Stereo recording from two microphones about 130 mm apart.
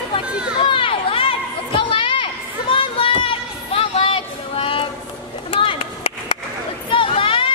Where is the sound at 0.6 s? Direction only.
40° left (ahead or behind).